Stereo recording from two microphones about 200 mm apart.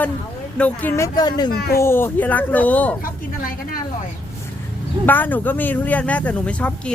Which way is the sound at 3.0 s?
45° left (ahead or behind).